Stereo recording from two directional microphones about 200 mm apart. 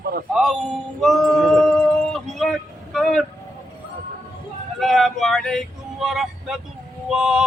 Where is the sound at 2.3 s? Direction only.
Centre (ahead or behind).